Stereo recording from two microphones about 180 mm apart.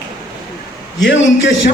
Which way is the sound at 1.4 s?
90° left.